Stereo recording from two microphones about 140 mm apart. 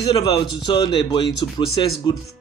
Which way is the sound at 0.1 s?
35° left (ahead or behind).